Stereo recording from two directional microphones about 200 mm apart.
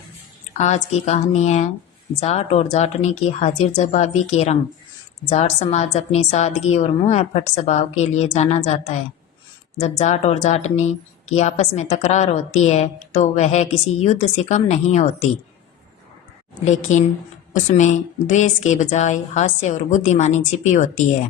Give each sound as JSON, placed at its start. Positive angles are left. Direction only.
{"t": 0.5, "sound": "a woman's voice", "side_deg": 35}
{"t": 16.9, "sound": "a woman's voice", "side_deg": 35}